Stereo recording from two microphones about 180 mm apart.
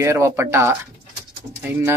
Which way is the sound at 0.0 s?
15° right (ahead or behind).